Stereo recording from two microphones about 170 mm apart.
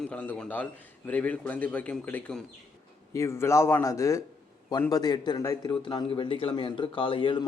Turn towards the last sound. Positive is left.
turn(degrees=30)  # may be behind; listen again after turning